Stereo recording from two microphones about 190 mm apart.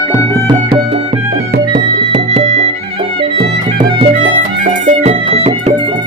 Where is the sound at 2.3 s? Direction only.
35° right (ahead or behind).